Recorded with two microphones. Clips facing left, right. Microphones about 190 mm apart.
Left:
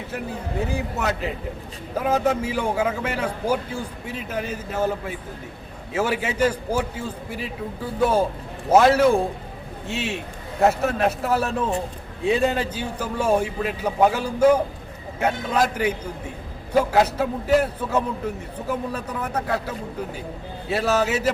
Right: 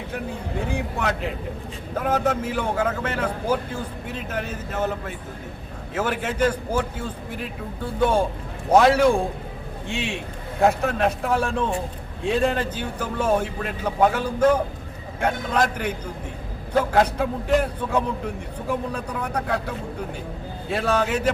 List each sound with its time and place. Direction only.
0.7 s a man's voice: 5° left (ahead or behind)